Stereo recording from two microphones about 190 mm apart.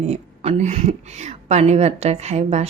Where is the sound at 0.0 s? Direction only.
35° right (ahead or behind).